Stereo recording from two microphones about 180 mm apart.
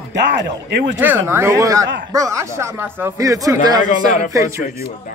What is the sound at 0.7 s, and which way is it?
Speech, 65° right (ahead or behind).